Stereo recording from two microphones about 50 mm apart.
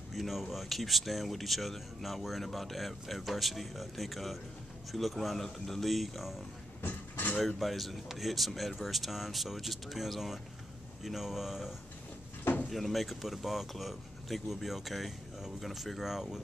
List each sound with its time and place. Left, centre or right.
0.1 s speech: centre
6.8 s a sound: left
7.3 s speech: centre